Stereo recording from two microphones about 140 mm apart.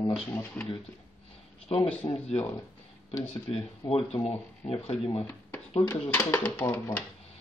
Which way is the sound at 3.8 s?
35° left (ahead or behind).